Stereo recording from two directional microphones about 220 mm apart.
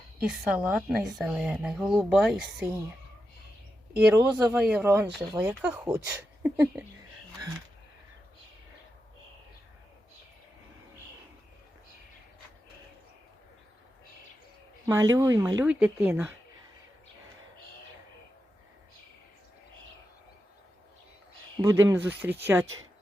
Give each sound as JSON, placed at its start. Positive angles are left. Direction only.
{"t": 0.2, "sound": "speech", "side_deg": -5}
{"t": 4.1, "sound": "speech", "side_deg": -5}
{"t": 14.8, "sound": "speech", "side_deg": -15}
{"t": 21.6, "sound": "speech", "side_deg": -15}